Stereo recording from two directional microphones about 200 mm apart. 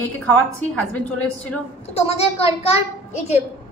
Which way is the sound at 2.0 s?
30° left (ahead or behind).